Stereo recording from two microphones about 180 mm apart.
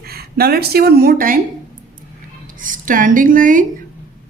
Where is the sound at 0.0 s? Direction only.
60° right (ahead or behind).